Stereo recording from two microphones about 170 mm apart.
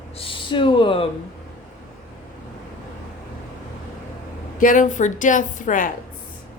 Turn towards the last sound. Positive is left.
turn(degrees=50)  # may be behind; listen again after turning